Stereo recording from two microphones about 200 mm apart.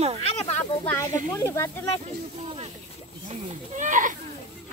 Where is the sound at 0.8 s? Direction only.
15° left (ahead or behind).